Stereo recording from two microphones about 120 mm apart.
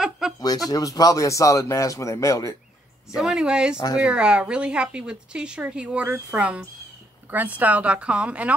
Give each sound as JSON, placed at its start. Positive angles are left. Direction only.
{"t": 0.2, "sound": "a sound", "side_deg": -5}
{"t": 0.7, "sound": "speech", "side_deg": 30}
{"t": 3.2, "sound": "a woman's voice", "side_deg": -5}